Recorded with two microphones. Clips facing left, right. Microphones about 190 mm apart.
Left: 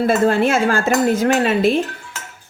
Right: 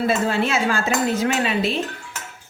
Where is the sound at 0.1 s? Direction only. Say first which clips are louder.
Left 6 dB; 50° left (ahead or behind).